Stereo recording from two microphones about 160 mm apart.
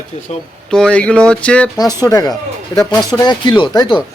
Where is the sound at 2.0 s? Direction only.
20° left (ahead or behind).